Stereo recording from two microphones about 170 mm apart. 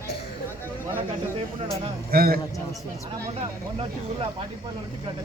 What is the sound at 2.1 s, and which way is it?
Speech, 60° right (ahead or behind).